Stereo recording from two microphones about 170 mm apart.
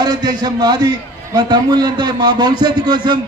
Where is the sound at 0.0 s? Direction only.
25° right (ahead or behind).